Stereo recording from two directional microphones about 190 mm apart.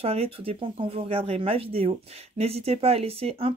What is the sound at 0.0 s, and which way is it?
Speech, 30° right (ahead or behind).